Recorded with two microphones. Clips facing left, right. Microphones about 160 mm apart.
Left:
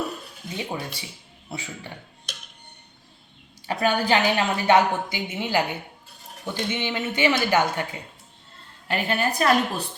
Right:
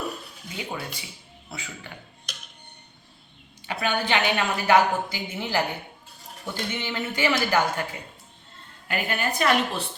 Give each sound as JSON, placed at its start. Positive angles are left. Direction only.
{"t": 0.5, "sound": "a woman's voice", "side_deg": 25}
{"t": 3.7, "sound": "a woman's voice", "side_deg": 35}
{"t": 8.9, "sound": "a woman's voice", "side_deg": 30}